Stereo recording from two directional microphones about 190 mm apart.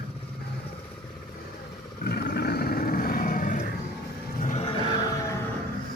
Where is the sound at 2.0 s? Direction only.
55° left (ahead or behind).